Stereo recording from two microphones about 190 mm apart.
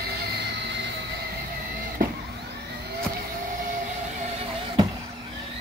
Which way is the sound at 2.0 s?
50° right (ahead or behind).